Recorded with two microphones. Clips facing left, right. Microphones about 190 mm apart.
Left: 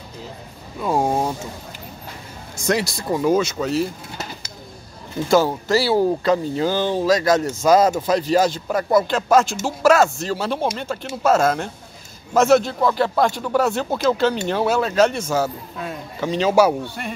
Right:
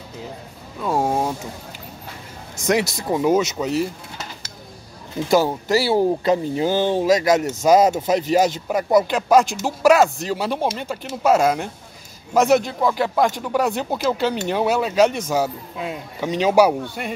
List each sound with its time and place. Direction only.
0.8 s speech: centre (ahead or behind)
2.6 s speech: 20° right (ahead or behind)
5.3 s speech: 15° right (ahead or behind)